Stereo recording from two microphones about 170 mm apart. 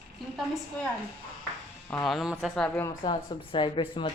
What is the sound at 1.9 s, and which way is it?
Speech, centre (ahead or behind).